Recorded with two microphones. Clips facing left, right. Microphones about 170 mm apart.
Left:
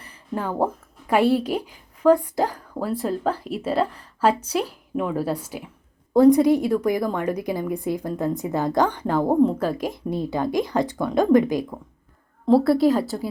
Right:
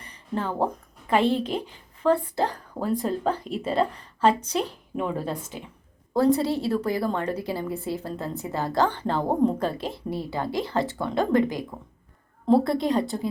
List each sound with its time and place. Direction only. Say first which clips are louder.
0.0 s a woman's voice: left 1 dB; 10° left (ahead or behind)
12.5 s a woman's voice: left 4 dB; 5° left (ahead or behind)